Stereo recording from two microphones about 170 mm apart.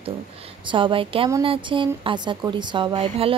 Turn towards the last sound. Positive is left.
turn(degrees=-30)  # may be behind; listen again after turning